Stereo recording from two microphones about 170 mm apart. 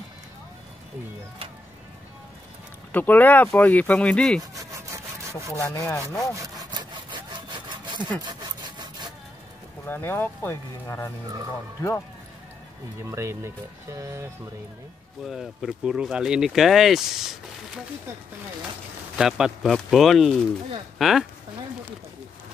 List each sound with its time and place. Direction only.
2.9 s speech: 10° left (ahead or behind)
4.4 s rub: 20° right (ahead or behind)
5.6 s speech: 20° left (ahead or behind)
6.3 s sawing: 20° right (ahead or behind)
9.8 s speech: 10° left (ahead or behind)
13.0 s speech: 15° right (ahead or behind)
15.2 s speech: centre (ahead or behind)
19.1 s speech: 5° right (ahead or behind)